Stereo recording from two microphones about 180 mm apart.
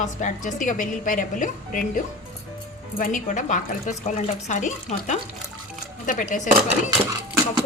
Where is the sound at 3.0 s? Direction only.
45° left (ahead or behind).